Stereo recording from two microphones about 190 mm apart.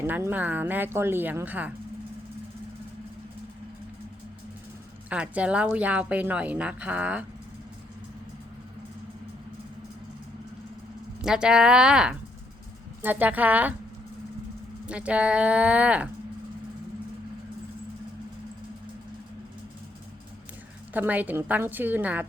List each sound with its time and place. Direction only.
0.0 s a woman's voice: 10° right (ahead or behind)
5.0 s a woman's voice: 5° right (ahead or behind)
11.2 s a woman's voice: 5° right (ahead or behind)
14.8 s a woman's voice: 5° right (ahead or behind)
20.9 s a woman's voice: 10° right (ahead or behind)